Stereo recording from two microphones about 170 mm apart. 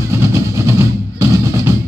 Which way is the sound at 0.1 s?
15° right (ahead or behind).